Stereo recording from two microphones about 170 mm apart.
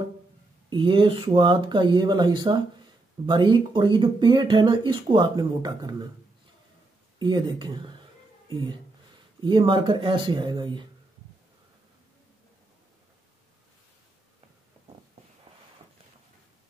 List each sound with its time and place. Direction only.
0.7 s speech: 30° right (ahead or behind)
7.2 s speech: 25° right (ahead or behind)